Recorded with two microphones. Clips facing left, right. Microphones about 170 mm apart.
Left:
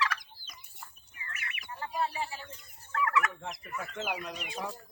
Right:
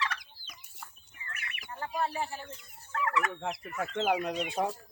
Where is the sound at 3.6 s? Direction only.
80° right.